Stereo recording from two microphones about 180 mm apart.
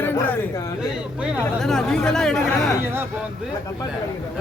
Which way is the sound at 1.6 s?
Centre (ahead or behind).